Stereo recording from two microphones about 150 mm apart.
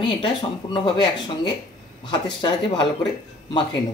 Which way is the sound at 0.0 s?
35° left (ahead or behind).